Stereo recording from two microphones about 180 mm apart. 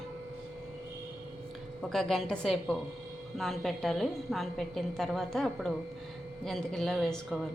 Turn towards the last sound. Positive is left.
turn(degrees=0)  # may be behind; listen again after turning